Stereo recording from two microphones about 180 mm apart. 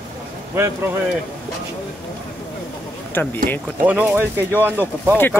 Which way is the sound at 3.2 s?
10° left (ahead or behind).